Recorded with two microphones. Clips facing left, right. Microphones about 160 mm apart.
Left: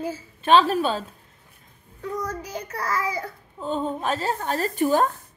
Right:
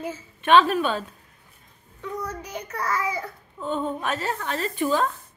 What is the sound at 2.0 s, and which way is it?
Child singing, 35° left (ahead or behind).